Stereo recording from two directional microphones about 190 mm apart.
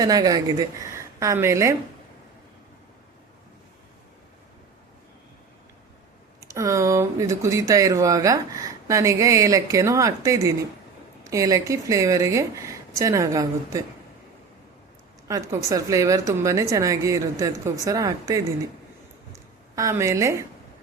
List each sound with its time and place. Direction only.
0.0 s speech: 20° right (ahead or behind)
6.4 s speech: 15° right (ahead or behind)
15.3 s speech: 15° right (ahead or behind)
19.7 s speech: 15° right (ahead or behind)